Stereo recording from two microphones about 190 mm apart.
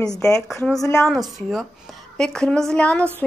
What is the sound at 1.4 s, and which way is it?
A woman's voice, centre (ahead or behind).